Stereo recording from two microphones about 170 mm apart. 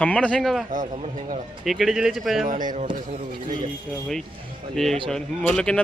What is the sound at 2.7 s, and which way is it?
Speech, 45° right (ahead or behind).